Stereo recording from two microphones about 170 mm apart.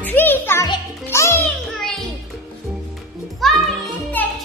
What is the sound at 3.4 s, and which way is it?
Music, centre (ahead or behind).